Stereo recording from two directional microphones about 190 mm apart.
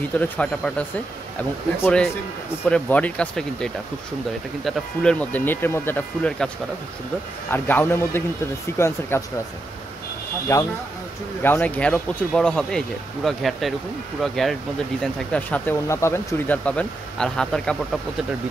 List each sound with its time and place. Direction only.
0.2 s speech: 5° left (ahead or behind)
10.5 s speech: 15° left (ahead or behind)